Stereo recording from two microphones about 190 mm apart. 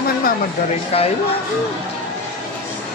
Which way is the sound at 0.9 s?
30° left (ahead or behind).